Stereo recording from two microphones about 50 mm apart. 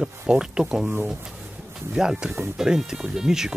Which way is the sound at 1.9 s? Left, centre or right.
Centre.